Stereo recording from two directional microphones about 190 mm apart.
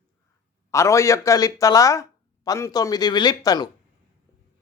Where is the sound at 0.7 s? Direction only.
15° left (ahead or behind).